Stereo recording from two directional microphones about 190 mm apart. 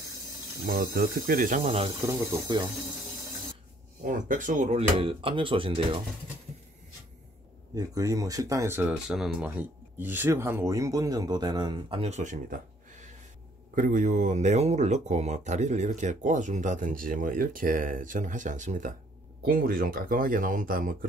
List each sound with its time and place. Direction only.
0.9 s speech: 50° right (ahead or behind)
1.9 s speech: 15° right (ahead or behind)
4.0 s speech: 45° right (ahead or behind); by 5.9 s 30° right (ahead or behind)
7.7 s speech: 20° right (ahead or behind); by 12.5 s 40° right (ahead or behind)
13.7 s speech: 45° right (ahead or behind)